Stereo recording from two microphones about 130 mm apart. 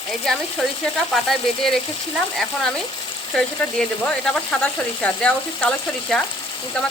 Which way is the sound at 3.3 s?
5° left (ahead or behind).